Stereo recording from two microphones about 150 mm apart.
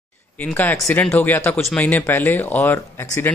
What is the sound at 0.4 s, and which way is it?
Speech, 10° left (ahead or behind).